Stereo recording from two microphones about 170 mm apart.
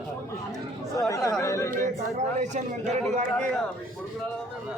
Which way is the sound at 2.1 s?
45° right (ahead or behind).